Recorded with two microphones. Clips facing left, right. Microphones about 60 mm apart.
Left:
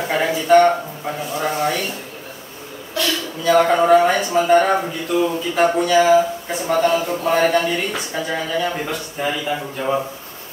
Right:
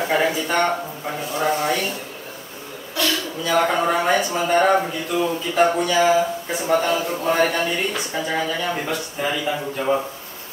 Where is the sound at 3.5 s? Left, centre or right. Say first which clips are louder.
Left 6 dB; centre.